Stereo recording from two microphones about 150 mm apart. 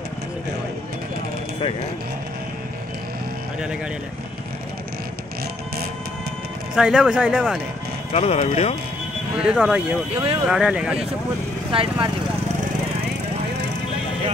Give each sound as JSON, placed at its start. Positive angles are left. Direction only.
{"t": 6.7, "sound": "speech", "side_deg": -5}
{"t": 8.1, "sound": "speech", "side_deg": 45}
{"t": 9.4, "sound": "speech", "side_deg": -5}
{"t": 10.1, "sound": "speech", "side_deg": -40}
{"t": 10.5, "sound": "speech", "side_deg": -5}
{"t": 11.7, "sound": "speech", "side_deg": -35}